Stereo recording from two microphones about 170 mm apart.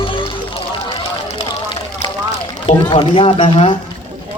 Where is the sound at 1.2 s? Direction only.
30° left (ahead or behind).